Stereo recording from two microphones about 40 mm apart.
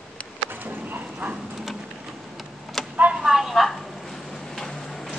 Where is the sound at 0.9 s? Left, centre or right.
Right.